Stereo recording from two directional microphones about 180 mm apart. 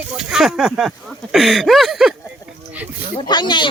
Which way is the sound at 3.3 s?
25° left (ahead or behind).